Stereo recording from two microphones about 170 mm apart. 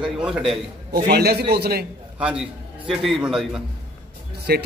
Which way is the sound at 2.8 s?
Centre (ahead or behind).